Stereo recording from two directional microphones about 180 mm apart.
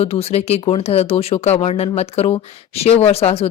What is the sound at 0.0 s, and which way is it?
Speech, 35° left (ahead or behind).